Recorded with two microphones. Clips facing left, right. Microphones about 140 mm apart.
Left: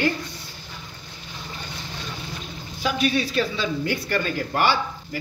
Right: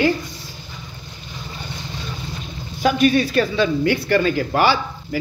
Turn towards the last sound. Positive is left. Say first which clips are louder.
# right 5 dB
turn(degrees=-90)